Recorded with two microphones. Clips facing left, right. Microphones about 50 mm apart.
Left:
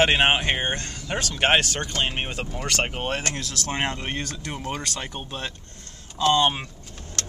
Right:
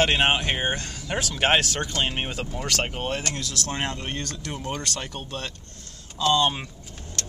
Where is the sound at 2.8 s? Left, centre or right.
Left.